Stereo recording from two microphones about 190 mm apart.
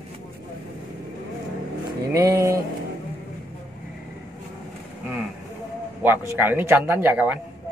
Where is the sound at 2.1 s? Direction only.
20° right (ahead or behind).